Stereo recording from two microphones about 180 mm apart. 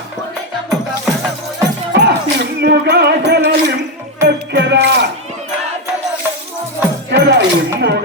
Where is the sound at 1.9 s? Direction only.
70° right (ahead or behind).